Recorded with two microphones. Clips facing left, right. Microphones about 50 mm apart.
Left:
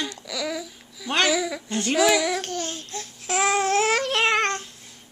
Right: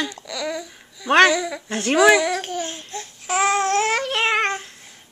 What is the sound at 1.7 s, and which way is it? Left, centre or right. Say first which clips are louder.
Female singing: right 4 dB; right.